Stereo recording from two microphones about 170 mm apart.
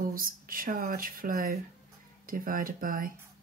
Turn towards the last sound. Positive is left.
turn(degrees=-55)  # may be behind; listen again after turning